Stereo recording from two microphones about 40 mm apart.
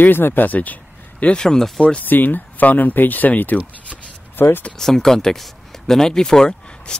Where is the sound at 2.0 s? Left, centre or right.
Left.